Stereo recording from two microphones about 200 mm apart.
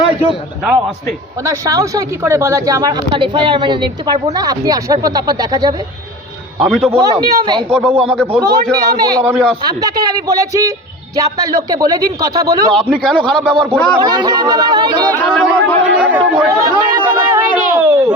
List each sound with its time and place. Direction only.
0.6 s a man's voice: centre (ahead or behind)
1.5 s speech: 15° right (ahead or behind)
6.6 s a man's voice: centre (ahead or behind)
6.9 s a man's voice: 20° right (ahead or behind)
9.2 s a man's voice: 5° right (ahead or behind)
9.6 s a man's voice: 20° right (ahead or behind)
12.7 s a man's voice: centre (ahead or behind)
14.0 s speech: 20° right (ahead or behind)
15.2 s chatter: 5° left (ahead or behind)
16.0 s chatter: 10° right (ahead or behind)